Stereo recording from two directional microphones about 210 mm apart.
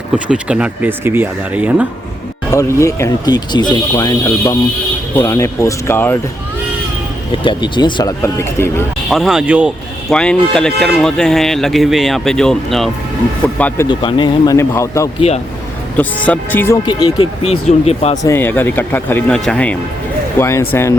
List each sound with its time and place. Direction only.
0.3 s speech: 5° right (ahead or behind)
2.5 s speech: 15° left (ahead or behind)
7.4 s speech: 20° left (ahead or behind)
9.0 s speech: centre (ahead or behind)
13.8 s speech: 20° left (ahead or behind)
18.2 s speech: 10° left (ahead or behind)